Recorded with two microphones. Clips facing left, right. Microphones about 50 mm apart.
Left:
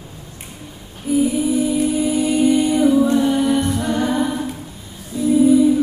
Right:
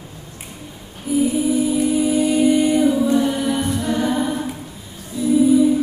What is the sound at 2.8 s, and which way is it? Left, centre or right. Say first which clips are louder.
Music: left 2 dB; centre.